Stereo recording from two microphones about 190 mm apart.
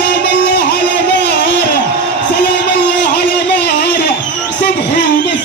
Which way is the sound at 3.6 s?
60° left (ahead or behind).